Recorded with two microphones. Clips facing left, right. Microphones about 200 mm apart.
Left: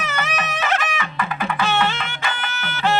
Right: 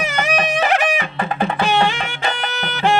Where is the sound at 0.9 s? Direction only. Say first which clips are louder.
Right 4 dB; 35° right (ahead or behind).